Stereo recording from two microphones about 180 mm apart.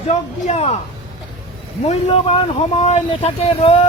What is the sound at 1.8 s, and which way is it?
Speech, 40° left (ahead or behind).